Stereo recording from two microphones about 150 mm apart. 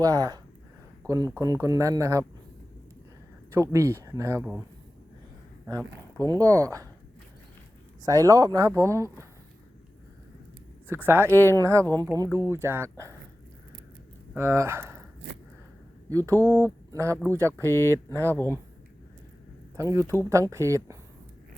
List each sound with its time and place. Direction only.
0.0 s speech: 25° right (ahead or behind)
3.5 s speech: 20° right (ahead or behind)
5.6 s speech: 20° right (ahead or behind)
8.0 s speech: 25° right (ahead or behind)
10.8 s speech: 15° right (ahead or behind)
11.3 s speech: 15° left (ahead or behind)
11.6 s speech: 20° right (ahead or behind)
14.3 s speech: 15° right (ahead or behind)
16.0 s speech: 20° right (ahead or behind)
17.6 s speech: 15° left (ahead or behind)
19.7 s speech: 20° right (ahead or behind)